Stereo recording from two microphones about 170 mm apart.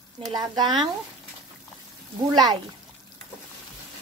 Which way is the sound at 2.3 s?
25° right (ahead or behind).